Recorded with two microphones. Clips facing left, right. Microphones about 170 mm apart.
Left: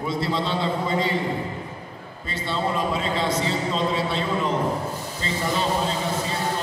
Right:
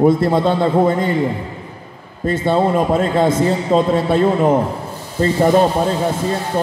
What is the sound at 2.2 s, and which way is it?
A man's voice, 50° right (ahead or behind).